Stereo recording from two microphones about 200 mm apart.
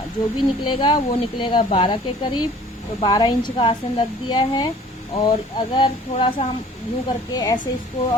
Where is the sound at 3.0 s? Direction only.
20° left (ahead or behind).